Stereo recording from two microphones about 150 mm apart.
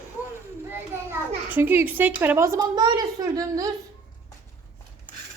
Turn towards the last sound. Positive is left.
turn(degrees=-25)  # may be behind; listen again after turning